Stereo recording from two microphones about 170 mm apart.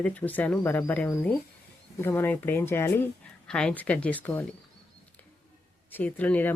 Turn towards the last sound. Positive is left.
turn(degrees=10)  # may be behind; listen again after turning